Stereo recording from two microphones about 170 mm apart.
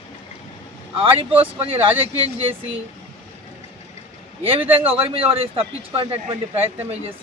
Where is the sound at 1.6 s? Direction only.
35° right (ahead or behind).